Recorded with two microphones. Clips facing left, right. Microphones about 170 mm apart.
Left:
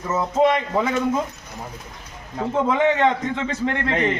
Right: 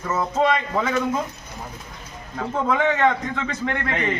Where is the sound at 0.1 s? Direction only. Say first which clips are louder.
Left 2 dB; 15° left (ahead or behind).